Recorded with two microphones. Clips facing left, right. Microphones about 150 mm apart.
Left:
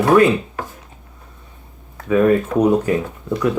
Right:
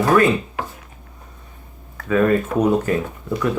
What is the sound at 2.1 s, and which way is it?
Speech, 10° left (ahead or behind).